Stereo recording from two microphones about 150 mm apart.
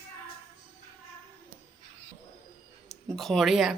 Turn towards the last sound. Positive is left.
turn(degrees=0)  # may be behind; listen again after turning